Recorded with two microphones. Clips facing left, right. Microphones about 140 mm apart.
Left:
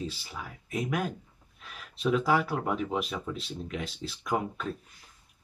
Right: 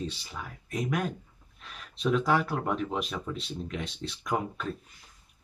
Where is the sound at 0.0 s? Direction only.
5° left (ahead or behind).